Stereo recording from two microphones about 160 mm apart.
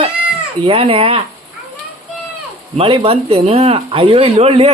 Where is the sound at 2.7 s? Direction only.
35° right (ahead or behind).